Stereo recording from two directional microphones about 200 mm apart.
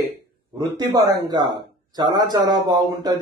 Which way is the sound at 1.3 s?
20° right (ahead or behind).